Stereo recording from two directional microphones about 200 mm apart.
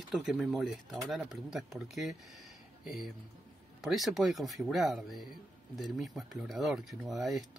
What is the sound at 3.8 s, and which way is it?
Speech, centre (ahead or behind).